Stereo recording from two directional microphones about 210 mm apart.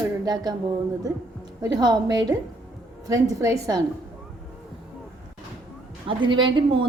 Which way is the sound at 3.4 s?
15° right (ahead or behind).